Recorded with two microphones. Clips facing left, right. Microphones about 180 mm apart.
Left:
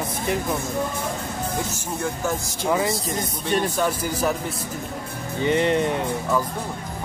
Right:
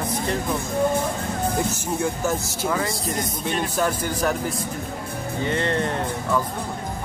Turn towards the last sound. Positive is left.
turn(degrees=15)  # may be behind; listen again after turning